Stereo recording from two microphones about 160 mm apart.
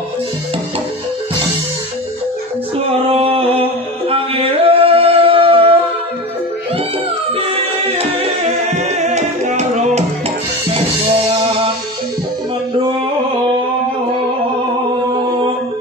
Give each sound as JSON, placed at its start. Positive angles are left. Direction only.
{"t": 3.1, "sound": "a sound", "side_deg": -35}
{"t": 4.1, "sound": "singing", "side_deg": -35}
{"t": 7.3, "sound": "singing", "side_deg": -40}
{"t": 8.6, "sound": "music", "side_deg": -45}